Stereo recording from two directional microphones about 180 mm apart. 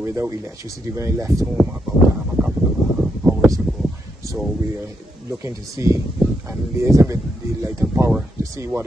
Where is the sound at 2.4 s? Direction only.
5° right (ahead or behind).